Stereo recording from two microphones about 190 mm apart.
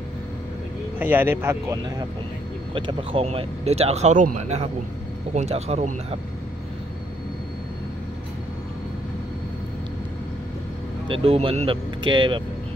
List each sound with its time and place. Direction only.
0.9 s speech: 10° right (ahead or behind); by 5.9 s 35° right (ahead or behind)
11.1 s speech: 30° right (ahead or behind)